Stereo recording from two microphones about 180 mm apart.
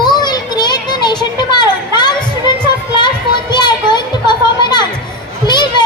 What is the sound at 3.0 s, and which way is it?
Children playing, 25° left (ahead or behind).